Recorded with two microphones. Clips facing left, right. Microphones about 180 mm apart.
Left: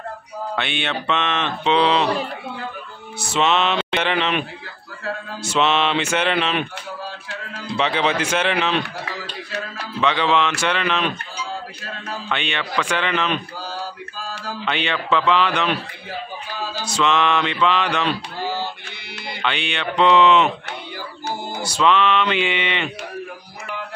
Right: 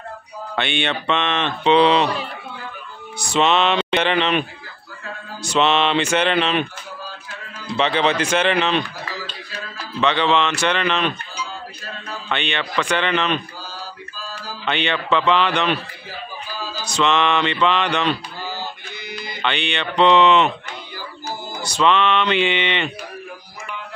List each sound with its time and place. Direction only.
0.6 s mantra: 5° left (ahead or behind)
3.2 s speech: 5° left (ahead or behind)
5.4 s mantra: 5° left (ahead or behind)
7.7 s mantra: 5° left (ahead or behind)
9.9 s speech: 5° left (ahead or behind)
12.3 s mantra: 5° left (ahead or behind)
14.1 s a sound: 70° left (ahead or behind)
14.6 s mantra: centre (ahead or behind)
16.8 s mantra: 5° left (ahead or behind)
19.1 s music: 70° left (ahead or behind)
19.4 s speech: 5° left (ahead or behind)
21.6 s mantra: 5° left (ahead or behind)